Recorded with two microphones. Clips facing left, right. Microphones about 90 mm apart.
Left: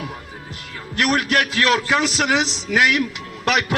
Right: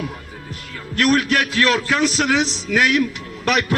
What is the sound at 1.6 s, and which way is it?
A man's voice, 20° left (ahead or behind).